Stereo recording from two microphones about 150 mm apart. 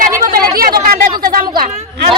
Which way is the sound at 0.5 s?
80° right.